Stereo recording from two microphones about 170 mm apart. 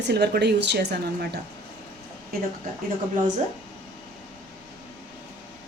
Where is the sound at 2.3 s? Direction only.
60° right (ahead or behind).